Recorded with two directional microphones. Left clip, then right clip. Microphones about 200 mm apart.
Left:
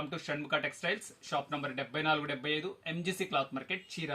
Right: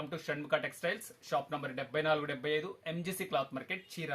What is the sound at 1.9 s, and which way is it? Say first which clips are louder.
Speech: even; 20° right (ahead or behind).